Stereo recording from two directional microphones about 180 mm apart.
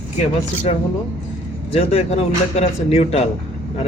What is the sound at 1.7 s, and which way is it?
Speech, 35° left (ahead or behind).